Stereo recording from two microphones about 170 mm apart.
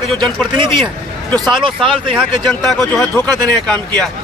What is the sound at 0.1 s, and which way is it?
Speech, centre (ahead or behind).